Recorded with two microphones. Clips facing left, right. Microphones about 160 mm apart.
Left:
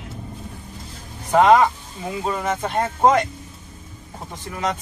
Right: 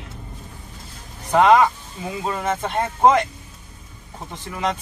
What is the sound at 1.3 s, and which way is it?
Speech, centre (ahead or behind).